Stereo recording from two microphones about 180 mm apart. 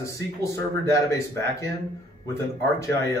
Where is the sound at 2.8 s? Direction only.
15° left (ahead or behind).